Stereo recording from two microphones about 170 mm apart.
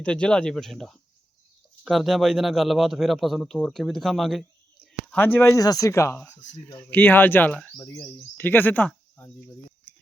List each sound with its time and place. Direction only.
0.0 s a man's voice: 5° left (ahead or behind)
5.1 s speech: 10° left (ahead or behind)